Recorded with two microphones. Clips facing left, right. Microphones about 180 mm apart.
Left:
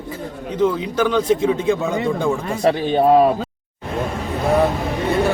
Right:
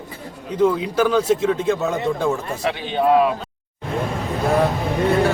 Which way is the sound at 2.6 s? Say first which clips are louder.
Left 4 dB; 40° left (ahead or behind).